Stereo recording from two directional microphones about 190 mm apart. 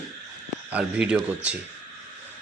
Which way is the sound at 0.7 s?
5° right (ahead or behind).